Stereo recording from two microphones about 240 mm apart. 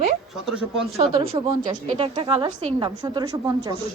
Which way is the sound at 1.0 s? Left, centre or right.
Right.